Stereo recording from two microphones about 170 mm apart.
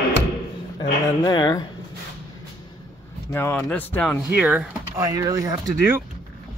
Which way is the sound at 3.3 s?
15° left (ahead or behind).